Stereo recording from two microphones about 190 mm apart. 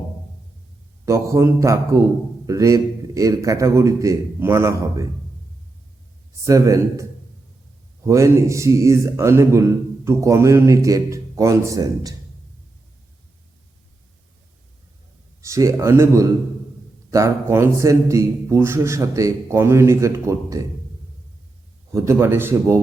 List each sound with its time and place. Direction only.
1.0 s a man's voice: 15° right (ahead or behind)
6.4 s a man's voice: 15° right (ahead or behind)
15.4 s a man's voice: 15° right (ahead or behind)
21.9 s a man's voice: 15° right (ahead or behind)